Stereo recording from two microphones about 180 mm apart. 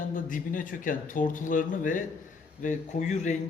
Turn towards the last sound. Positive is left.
turn(degrees=40)  # may be behind; listen again after turning